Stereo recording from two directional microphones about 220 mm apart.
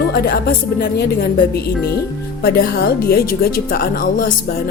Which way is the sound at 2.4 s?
45° left (ahead or behind).